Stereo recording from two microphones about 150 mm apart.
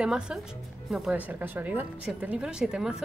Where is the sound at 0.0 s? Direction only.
5° right (ahead or behind).